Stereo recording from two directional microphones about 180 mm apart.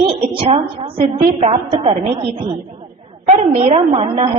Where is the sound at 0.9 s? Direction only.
50° right (ahead or behind).